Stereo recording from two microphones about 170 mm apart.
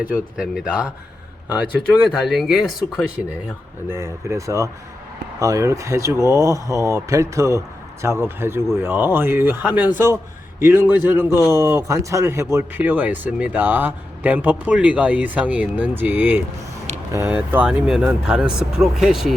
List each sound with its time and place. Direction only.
0.1 s speech: 5° right (ahead or behind)
3.8 s speech: 15° right (ahead or behind)